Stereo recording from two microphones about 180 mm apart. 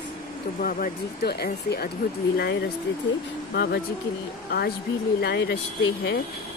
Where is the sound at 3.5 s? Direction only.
65° left (ahead or behind).